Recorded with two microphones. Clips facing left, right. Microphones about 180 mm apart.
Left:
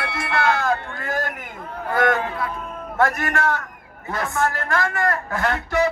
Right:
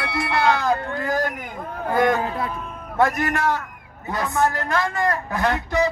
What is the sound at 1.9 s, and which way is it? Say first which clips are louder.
Speech: right 1 dB; 20° right (ahead or behind).